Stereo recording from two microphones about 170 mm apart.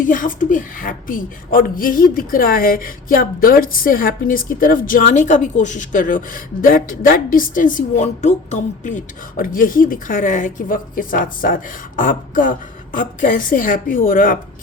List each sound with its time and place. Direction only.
0.0 s a woman's voice: 50° left (ahead or behind)